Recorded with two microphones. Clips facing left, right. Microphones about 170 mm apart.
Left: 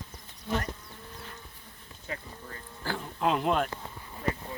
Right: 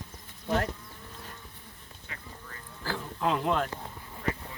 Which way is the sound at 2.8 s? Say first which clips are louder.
Left 1 dB; 20° left (ahead or behind).